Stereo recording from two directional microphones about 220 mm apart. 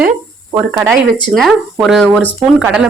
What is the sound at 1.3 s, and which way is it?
Speech, centre (ahead or behind).